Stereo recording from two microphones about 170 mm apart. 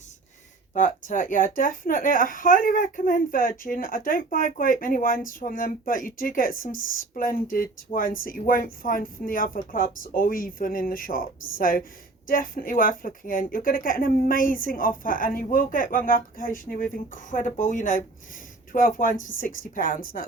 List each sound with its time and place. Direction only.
0.7 s speech: 50° left (ahead or behind)